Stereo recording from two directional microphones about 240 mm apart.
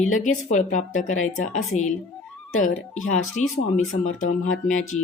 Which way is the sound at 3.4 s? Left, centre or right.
Left.